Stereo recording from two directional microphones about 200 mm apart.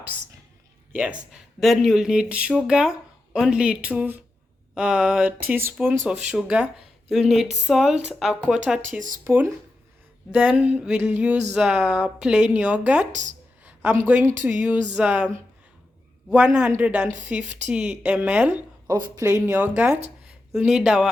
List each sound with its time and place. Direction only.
0.9 s speech: 5° right (ahead or behind)
5.5 s a sound: 10° right (ahead or behind)
6.1 s speech: 5° right (ahead or behind)
9.0 s speech: 40° right (ahead or behind)
9.2 s a sound: 10° right (ahead or behind)
11.5 s speech: 5° right (ahead or behind)
13.7 s a sound: 10° right (ahead or behind)
14.9 s speech: 5° right (ahead or behind)
16.3 s speech: 5° right (ahead or behind)
18.9 s speech: 20° right (ahead or behind)
19.5 s a sound: 10° right (ahead or behind)
20.5 s speech: centre (ahead or behind)